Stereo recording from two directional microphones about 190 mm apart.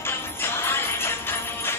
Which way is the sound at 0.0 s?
10° left (ahead or behind).